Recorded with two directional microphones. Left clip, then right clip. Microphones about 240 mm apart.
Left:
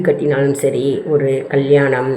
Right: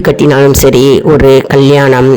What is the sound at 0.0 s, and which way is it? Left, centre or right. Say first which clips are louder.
Speech: right 8 dB; right.